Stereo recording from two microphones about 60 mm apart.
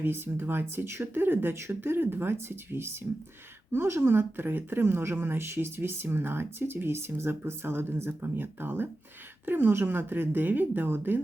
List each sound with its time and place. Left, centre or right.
0.0 s speech: right